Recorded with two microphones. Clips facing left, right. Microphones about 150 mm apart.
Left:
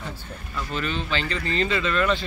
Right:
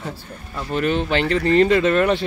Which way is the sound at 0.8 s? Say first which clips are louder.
Right 9 dB; 60° right (ahead or behind).